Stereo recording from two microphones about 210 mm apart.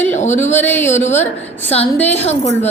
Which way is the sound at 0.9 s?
35° left (ahead or behind).